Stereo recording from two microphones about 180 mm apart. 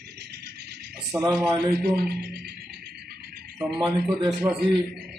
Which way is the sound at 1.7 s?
65° right (ahead or behind).